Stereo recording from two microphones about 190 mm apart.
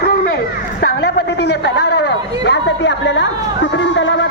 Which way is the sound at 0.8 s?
60° left (ahead or behind).